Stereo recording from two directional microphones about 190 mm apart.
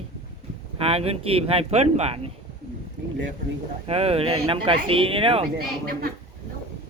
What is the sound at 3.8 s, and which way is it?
Speech, 30° right (ahead or behind).